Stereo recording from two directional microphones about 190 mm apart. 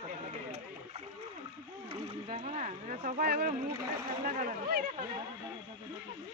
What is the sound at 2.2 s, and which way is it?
Speech, 40° right (ahead or behind).